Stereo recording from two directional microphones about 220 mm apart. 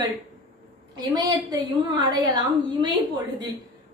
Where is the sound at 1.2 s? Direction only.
20° right (ahead or behind).